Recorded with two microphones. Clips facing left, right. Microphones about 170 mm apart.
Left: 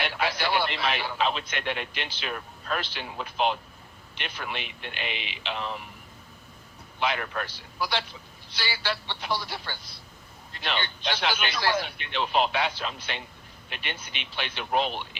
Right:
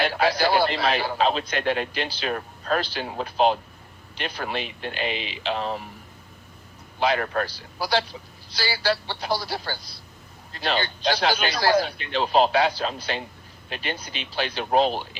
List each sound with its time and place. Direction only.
0.0 s a man's voice: 35° right (ahead or behind)
7.0 s a man's voice: 40° right (ahead or behind)